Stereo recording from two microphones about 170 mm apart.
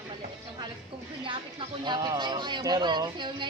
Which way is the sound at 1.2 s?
30° right (ahead or behind).